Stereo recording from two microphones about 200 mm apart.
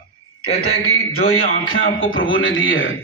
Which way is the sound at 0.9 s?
90° left.